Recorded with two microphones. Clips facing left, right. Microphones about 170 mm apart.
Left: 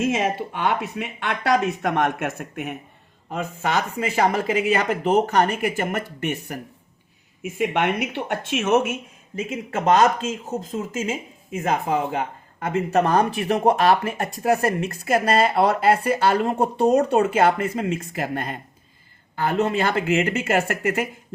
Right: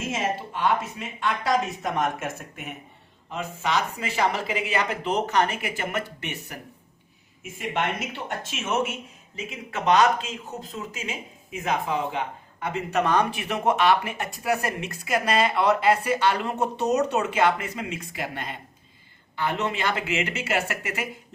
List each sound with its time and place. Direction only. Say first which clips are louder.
0.0 s speech: left 6 dB; 65° left (ahead or behind); by 6.6 s 50° left (ahead or behind)
7.4 s speech: left 6 dB; 60° left (ahead or behind)